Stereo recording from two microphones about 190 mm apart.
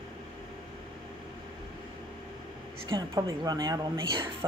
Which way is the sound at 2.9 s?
20° right (ahead or behind).